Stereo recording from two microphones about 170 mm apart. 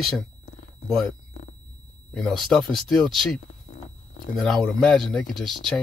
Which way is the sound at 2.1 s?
Centre (ahead or behind).